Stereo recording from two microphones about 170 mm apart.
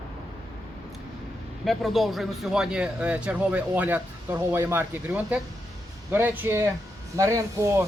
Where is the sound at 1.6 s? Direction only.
Centre (ahead or behind).